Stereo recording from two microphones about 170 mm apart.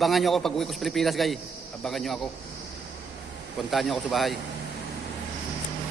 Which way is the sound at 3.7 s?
Centre (ahead or behind).